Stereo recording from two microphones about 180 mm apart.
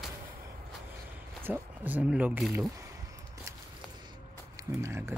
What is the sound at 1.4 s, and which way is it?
Speech, 10° right (ahead or behind).